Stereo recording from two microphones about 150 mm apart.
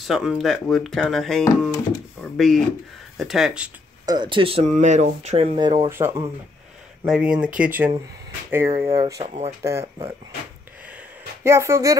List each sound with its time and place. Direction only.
0.0 s speech: centre (ahead or behind)
4.0 s speech: 30° right (ahead or behind)
4.7 s speech: 50° right (ahead or behind)
5.6 s speech: 30° right (ahead or behind)
5.9 s speech: 15° right (ahead or behind)
9.2 s speech: 45° right (ahead or behind)
9.6 s speech: 20° right (ahead or behind)
11.4 s speech: 15° right (ahead or behind)